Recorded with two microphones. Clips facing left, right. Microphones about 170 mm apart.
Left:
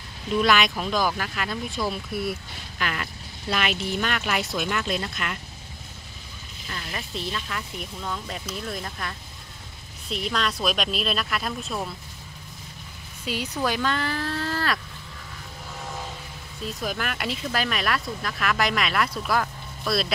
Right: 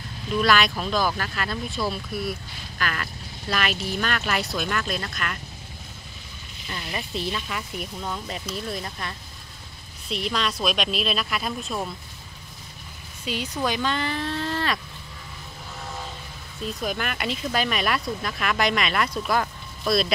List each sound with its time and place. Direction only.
0.3 s speech: 20° left (ahead or behind)
6.7 s speech: 10° right (ahead or behind)
13.2 s speech: 5° left (ahead or behind)
14.1 s a sound: 20° right (ahead or behind)
14.4 s vehicle: centre (ahead or behind)
16.6 s speech: centre (ahead or behind)
19.4 s a sound: centre (ahead or behind)